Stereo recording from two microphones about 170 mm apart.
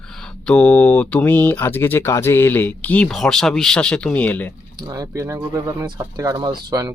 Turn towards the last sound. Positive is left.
turn(degrees=-25)  # may be behind; listen again after turning